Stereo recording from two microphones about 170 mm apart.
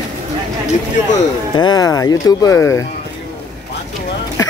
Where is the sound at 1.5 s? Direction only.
25° left (ahead or behind).